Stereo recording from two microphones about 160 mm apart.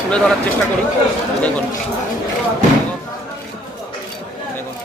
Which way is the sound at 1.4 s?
10° left (ahead or behind).